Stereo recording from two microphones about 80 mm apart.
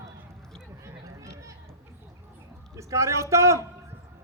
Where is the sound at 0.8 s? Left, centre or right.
Right.